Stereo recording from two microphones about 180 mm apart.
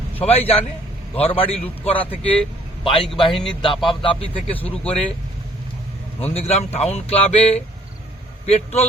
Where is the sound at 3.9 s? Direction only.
30° left (ahead or behind).